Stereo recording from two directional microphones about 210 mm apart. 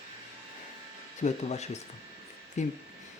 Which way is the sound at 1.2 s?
30° left (ahead or behind).